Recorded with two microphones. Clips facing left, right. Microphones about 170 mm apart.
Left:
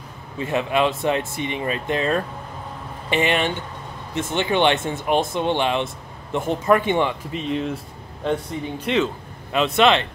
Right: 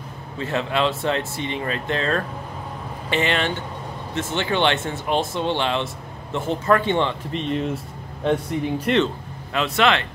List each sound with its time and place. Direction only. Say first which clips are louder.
0.4 s speech: left 2 dB; 15° left (ahead or behind)
9.5 s speech: left 3 dB; 20° left (ahead or behind)